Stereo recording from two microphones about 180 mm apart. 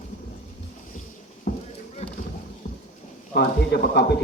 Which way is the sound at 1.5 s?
60° left (ahead or behind).